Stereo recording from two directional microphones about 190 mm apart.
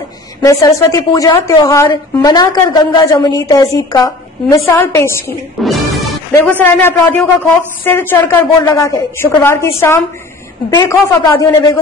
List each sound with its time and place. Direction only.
0.4 s a woman's voice: 20° left (ahead or behind)
5.6 s music: centre (ahead or behind)
6.3 s a woman's voice: 10° left (ahead or behind)